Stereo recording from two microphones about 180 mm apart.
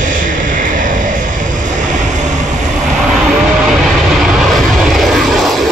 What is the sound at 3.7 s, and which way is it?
Vehicle, centre (ahead or behind).